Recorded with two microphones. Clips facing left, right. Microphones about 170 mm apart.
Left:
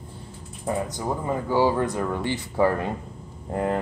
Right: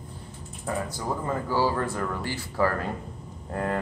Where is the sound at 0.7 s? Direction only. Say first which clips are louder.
Left 3 dB; 15° left (ahead or behind).